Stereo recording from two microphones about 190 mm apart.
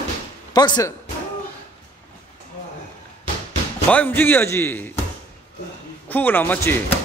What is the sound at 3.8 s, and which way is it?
A man's voice, 10° left (ahead or behind).